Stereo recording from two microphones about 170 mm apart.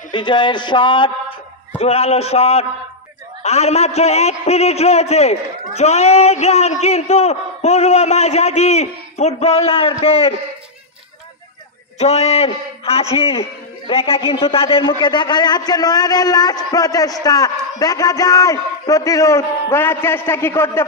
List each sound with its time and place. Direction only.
0.1 s a man's voice: 30° left (ahead or behind)
12.0 s a man's voice: 40° left (ahead or behind); by 20.8 s 15° left (ahead or behind)